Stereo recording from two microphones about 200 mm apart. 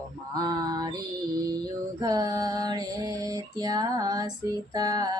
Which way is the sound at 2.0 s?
20° right (ahead or behind).